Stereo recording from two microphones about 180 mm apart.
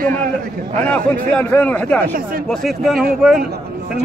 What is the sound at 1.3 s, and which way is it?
A man's voice, 5° left (ahead or behind).